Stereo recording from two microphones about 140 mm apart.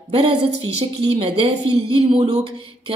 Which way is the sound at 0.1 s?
45° right (ahead or behind).